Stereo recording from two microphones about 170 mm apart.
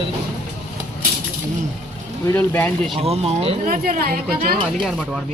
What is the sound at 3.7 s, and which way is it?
Speech, 60° right (ahead or behind).